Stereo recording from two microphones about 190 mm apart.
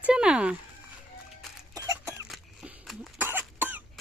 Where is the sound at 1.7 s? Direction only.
15° right (ahead or behind).